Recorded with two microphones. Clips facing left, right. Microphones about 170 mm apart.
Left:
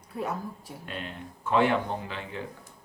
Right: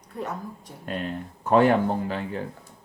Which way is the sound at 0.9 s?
45° right (ahead or behind).